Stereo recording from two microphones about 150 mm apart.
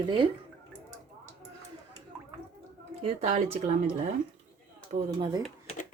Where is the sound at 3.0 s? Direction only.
50° right (ahead or behind).